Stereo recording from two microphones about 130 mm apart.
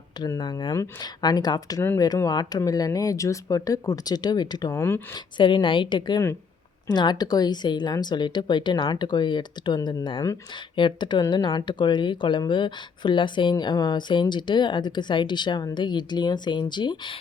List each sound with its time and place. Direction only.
0.2 s speech: 30° left (ahead or behind)
4.7 s speech: 20° left (ahead or behind)
5.1 s speech: 35° left (ahead or behind)